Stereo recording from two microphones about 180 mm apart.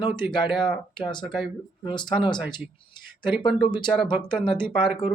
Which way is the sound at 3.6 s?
25° left (ahead or behind).